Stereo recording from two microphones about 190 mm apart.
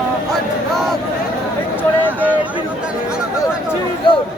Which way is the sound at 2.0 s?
10° right (ahead or behind).